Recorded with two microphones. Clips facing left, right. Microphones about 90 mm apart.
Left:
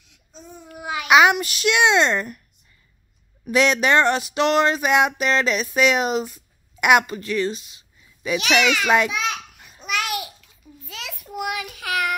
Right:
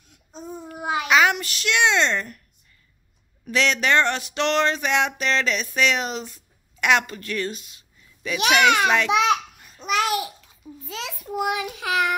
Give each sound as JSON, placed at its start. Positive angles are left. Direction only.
{"t": 0.0, "sound": "babbling", "side_deg": -45}
{"t": 1.0, "sound": "a child's voice", "side_deg": 15}
{"t": 3.4, "sound": "a sound", "side_deg": 15}
{"t": 9.1, "sound": "a child's voice", "side_deg": -65}
{"t": 9.8, "sound": "babbling", "side_deg": -35}
{"t": 11.2, "sound": "child singing", "side_deg": -25}